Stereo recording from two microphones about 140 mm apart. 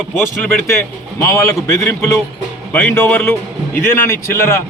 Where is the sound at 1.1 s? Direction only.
20° left (ahead or behind).